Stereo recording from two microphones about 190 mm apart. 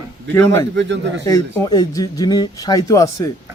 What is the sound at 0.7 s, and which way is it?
Speech, 65° right (ahead or behind).